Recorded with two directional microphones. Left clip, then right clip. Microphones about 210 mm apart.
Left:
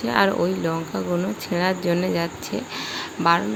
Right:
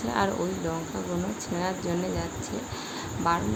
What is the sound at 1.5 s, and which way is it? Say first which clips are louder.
Speech: left 8 dB; 25° left (ahead or behind).